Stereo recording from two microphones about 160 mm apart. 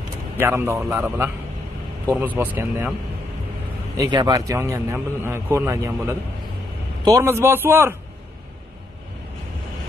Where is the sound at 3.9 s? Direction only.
25° right (ahead or behind).